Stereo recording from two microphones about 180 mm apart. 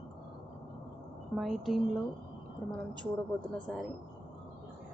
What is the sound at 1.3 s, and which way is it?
A woman's voice, centre (ahead or behind).